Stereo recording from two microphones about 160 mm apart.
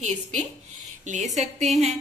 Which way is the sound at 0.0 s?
45° right (ahead or behind).